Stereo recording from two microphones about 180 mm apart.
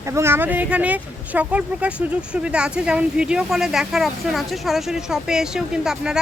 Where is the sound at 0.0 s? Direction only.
15° right (ahead or behind).